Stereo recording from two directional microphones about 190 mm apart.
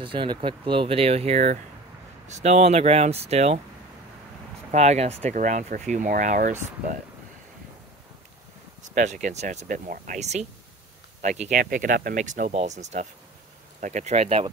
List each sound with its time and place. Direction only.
0.0 s speech: 25° right (ahead or behind)
4.6 s speech: 35° right (ahead or behind)
8.8 s speech: 40° right (ahead or behind)